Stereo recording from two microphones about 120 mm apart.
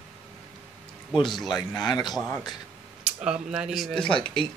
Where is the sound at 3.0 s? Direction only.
5° right (ahead or behind).